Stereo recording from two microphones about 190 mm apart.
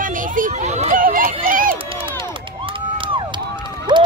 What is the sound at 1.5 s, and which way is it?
Run, 45° right (ahead or behind).